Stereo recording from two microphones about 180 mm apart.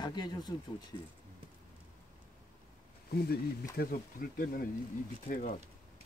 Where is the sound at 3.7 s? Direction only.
55° left (ahead or behind).